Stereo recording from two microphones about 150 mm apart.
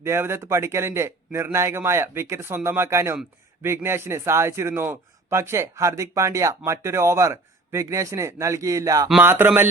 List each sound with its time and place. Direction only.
0.0 s a man's voice: 15° right (ahead or behind)